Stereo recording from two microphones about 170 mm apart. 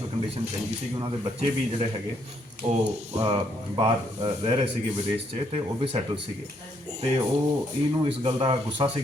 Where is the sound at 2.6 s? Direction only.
35° right (ahead or behind).